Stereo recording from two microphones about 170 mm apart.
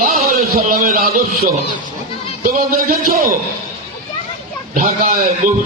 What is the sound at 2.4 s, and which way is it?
Speech, 55° right (ahead or behind).